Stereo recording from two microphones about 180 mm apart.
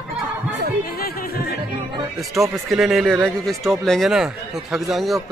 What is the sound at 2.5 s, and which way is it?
A man's voice, centre (ahead or behind).